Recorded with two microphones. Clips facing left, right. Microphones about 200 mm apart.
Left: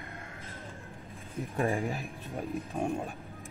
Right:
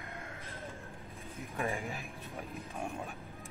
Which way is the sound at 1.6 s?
30° left (ahead or behind).